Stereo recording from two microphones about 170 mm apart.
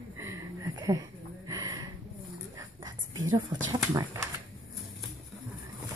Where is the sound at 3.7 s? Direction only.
20° right (ahead or behind).